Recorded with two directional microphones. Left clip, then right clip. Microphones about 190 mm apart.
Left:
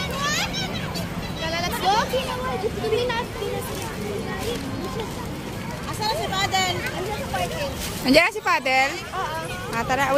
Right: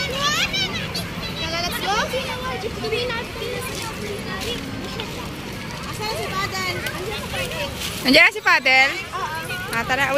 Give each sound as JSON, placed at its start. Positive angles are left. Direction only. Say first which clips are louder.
{"t": 1.5, "sound": "vehicle", "louder": "left 2 dB", "side_deg": 45}
{"t": 8.0, "sound": "speech", "louder": "right 4 dB", "side_deg": 5}